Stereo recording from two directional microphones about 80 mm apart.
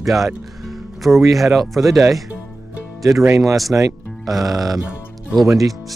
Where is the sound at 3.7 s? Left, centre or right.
Right.